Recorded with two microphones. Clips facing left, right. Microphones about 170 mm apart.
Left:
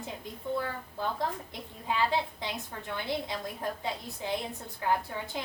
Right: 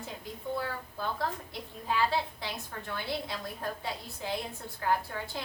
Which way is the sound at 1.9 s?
20° left (ahead or behind).